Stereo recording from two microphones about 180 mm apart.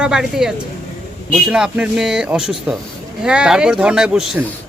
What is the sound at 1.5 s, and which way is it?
Speech, 5° right (ahead or behind).